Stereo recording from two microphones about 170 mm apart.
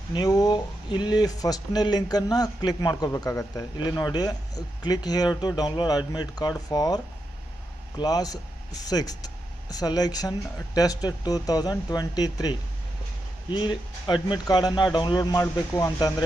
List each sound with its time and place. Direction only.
0.1 s speech: 25° left (ahead or behind)